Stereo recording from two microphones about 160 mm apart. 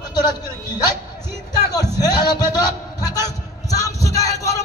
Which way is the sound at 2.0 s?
25° left (ahead or behind).